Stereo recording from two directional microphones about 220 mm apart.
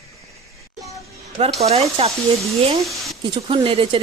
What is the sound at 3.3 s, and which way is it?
Speech, 25° right (ahead or behind).